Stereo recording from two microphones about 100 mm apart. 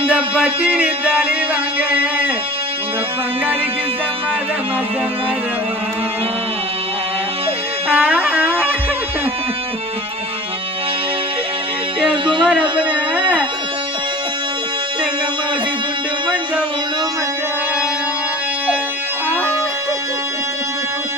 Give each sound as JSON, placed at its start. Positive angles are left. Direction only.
{"t": 0.3, "sound": "music", "side_deg": -10}
{"t": 7.9, "sound": "music", "side_deg": -15}
{"t": 12.9, "sound": "speech", "side_deg": -10}